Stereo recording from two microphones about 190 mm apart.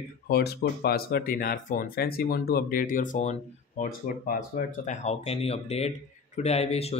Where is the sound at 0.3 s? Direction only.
55° left (ahead or behind).